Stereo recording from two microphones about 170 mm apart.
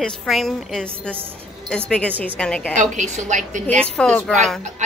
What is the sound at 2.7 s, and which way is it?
Speech, 45° right (ahead or behind).